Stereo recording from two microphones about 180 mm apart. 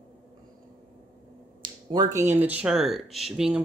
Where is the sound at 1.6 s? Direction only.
25° right (ahead or behind).